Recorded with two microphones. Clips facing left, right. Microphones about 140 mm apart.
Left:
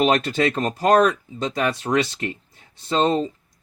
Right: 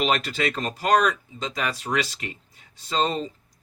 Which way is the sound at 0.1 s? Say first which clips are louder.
Left 5 dB; 35° left (ahead or behind).